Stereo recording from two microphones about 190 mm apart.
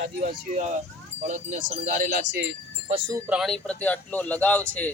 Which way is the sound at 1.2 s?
40° right (ahead or behind).